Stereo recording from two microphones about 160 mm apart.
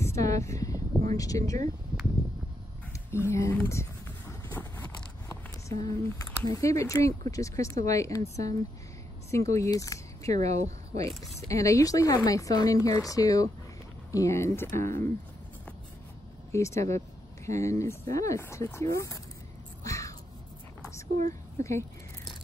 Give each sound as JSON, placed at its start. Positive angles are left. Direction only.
{"t": 0.0, "sound": "a sound", "side_deg": 20}
{"t": 1.1, "sound": "speech", "side_deg": 20}
{"t": 3.1, "sound": "speech", "side_deg": 15}
{"t": 4.3, "sound": "vehicle", "side_deg": 20}
{"t": 5.3, "sound": "a sound", "side_deg": 20}
{"t": 6.5, "sound": "speech", "side_deg": 20}
{"t": 10.5, "sound": "speech", "side_deg": -45}
{"t": 11.4, "sound": "speech", "side_deg": 20}
{"t": 16.5, "sound": "speech", "side_deg": 20}
{"t": 19.8, "sound": "a sound", "side_deg": 20}
{"t": 21.2, "sound": "a woman's voice", "side_deg": -50}